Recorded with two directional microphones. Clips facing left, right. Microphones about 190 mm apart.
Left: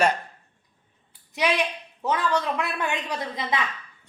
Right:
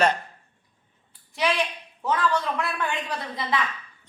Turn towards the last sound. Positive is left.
turn(degrees=20)  # may be behind; listen again after turning